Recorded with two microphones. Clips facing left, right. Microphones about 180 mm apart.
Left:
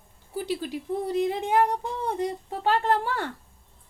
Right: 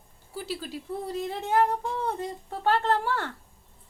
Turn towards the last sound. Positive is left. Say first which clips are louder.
# left 1 dB
turn(degrees=15)  # may be behind; listen again after turning